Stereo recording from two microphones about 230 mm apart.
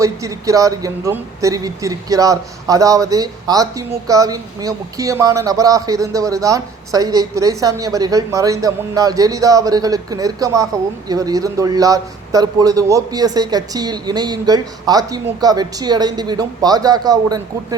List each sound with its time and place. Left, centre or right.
0.0 s a man's voice: centre